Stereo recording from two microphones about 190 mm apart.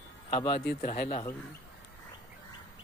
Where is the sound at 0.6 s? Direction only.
60° left (ahead or behind).